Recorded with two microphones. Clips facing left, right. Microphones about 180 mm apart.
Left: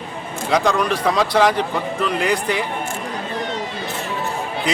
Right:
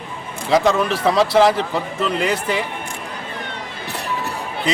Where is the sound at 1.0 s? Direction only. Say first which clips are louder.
Right 4 dB; 30° right (ahead or behind).